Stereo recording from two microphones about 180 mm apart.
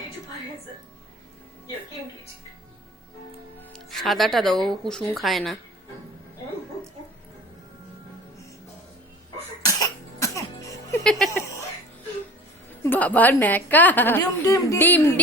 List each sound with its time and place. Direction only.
3.7 s speech: centre (ahead or behind)
9.6 s cough: 15° left (ahead or behind)
10.9 s speech: 5° left (ahead or behind)
12.8 s a woman's voice: 10° left (ahead or behind)